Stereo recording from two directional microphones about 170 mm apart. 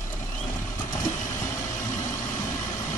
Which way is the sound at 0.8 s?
20° left (ahead or behind).